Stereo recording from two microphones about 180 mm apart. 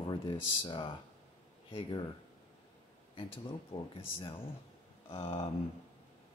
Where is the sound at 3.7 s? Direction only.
30° left (ahead or behind).